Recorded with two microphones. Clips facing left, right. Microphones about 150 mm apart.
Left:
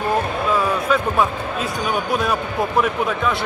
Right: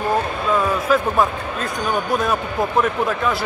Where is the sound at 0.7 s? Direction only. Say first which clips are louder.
Right 1 dB; centre (ahead or behind).